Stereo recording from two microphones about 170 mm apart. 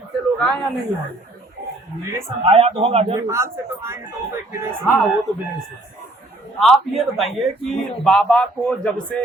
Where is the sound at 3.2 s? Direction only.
15° right (ahead or behind).